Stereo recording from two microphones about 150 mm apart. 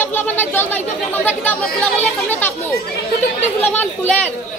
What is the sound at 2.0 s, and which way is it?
Speech, 10° left (ahead or behind).